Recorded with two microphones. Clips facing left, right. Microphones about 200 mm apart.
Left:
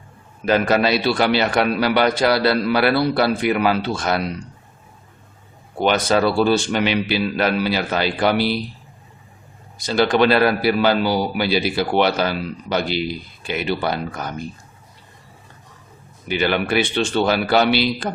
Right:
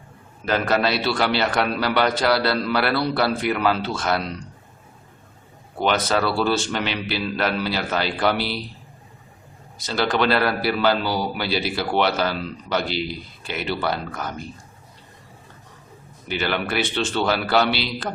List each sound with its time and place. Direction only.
0.4 s a man's voice: 15° left (ahead or behind)
5.8 s a man's voice: 15° left (ahead or behind)
9.7 s a man's voice: 15° left (ahead or behind)
16.3 s a man's voice: 15° left (ahead or behind)